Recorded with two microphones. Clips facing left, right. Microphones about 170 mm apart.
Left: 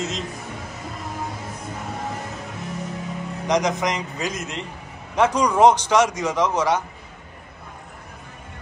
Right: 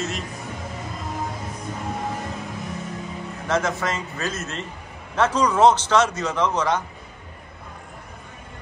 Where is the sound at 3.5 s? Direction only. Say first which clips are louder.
Left 2 dB; 15° left (ahead or behind).